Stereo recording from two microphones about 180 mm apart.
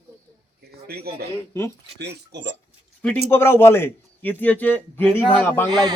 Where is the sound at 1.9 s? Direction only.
70° right (ahead or behind).